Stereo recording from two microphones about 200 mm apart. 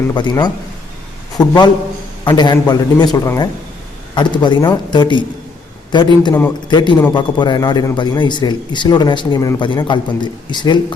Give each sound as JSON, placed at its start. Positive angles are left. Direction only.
{"t": 0.1, "sound": "a man's voice", "side_deg": 20}